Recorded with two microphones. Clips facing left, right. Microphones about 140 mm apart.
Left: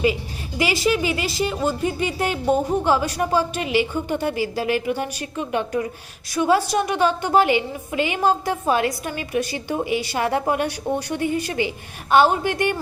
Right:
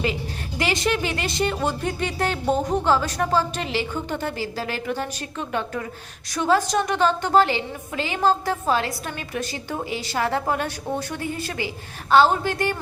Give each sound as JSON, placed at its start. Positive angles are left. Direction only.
{"t": 0.6, "sound": "a woman's voice", "side_deg": 5}